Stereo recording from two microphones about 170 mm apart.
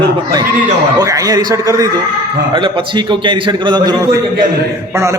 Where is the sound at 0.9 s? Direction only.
20° right (ahead or behind).